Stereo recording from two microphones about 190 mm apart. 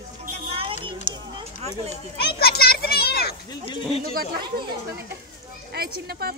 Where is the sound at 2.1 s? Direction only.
55° left (ahead or behind).